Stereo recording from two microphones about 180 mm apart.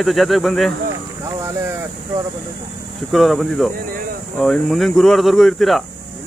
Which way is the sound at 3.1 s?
Centre (ahead or behind).